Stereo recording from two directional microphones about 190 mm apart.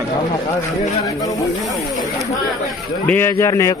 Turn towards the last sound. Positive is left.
turn(degrees=15)  # may be behind; listen again after turning